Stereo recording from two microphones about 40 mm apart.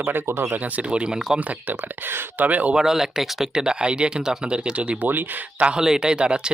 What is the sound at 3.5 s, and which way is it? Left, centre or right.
Speech, right.